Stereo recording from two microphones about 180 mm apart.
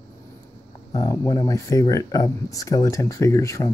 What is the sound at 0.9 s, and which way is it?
Speech, 20° left (ahead or behind).